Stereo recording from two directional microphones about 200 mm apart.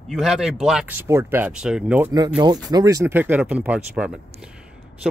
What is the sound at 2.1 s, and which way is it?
Speech, 20° right (ahead or behind).